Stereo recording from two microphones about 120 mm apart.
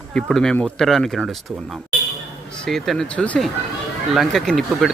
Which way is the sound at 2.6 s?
Centre (ahead or behind).